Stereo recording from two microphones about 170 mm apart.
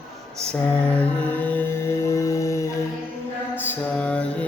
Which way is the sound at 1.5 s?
10° left (ahead or behind).